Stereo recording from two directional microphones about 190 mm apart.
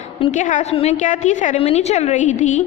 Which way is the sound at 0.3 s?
40° left (ahead or behind).